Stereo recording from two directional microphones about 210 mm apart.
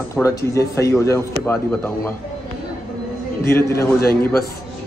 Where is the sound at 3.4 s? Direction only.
10° left (ahead or behind).